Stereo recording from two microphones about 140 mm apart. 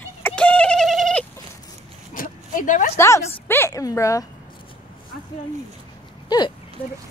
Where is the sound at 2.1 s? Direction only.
75° left (ahead or behind).